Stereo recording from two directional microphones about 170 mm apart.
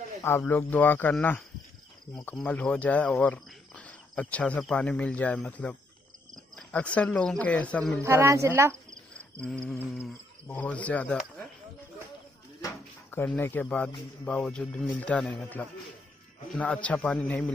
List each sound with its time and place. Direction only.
0.2 s speech: 15° left (ahead or behind)
8.0 s speech: 15° right (ahead or behind)
9.4 s speech: 5° left (ahead or behind)
12.6 s a sound: 10° left (ahead or behind)
14.2 s speech: 5° left (ahead or behind)